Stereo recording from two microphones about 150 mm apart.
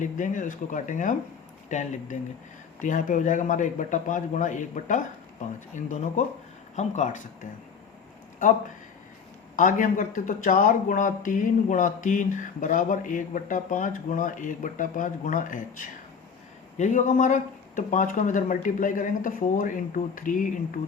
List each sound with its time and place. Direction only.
0.0 s speech: 60° left (ahead or behind)
9.6 s speech: 60° left (ahead or behind)